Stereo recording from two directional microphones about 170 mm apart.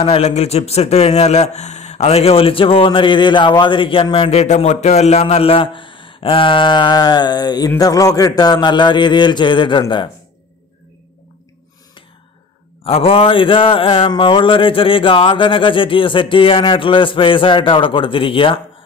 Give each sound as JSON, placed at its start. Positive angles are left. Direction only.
{"t": 0.0, "sound": "speech", "side_deg": 40}
{"t": 12.8, "sound": "speech", "side_deg": 35}